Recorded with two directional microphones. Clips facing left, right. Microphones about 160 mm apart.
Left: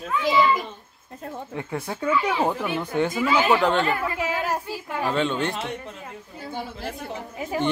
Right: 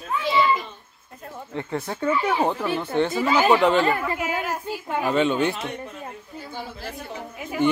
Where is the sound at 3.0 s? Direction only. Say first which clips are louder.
Right 1 dB; 35° right (ahead or behind).